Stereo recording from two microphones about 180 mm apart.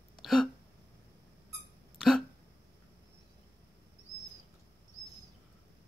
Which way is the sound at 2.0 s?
Centre (ahead or behind).